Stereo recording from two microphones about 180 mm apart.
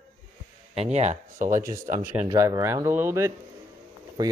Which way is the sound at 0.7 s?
35° right (ahead or behind).